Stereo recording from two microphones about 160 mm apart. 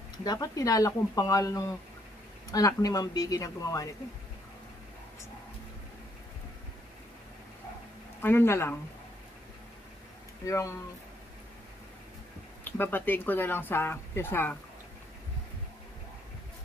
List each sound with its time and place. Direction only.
0.2 s speech: 25° left (ahead or behind)
8.2 s speech: 15° left (ahead or behind)
10.4 s speech: 20° left (ahead or behind)
12.6 s speech: 10° left (ahead or behind)